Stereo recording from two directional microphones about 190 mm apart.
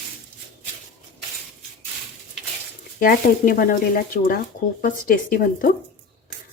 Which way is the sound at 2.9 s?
50° left (ahead or behind).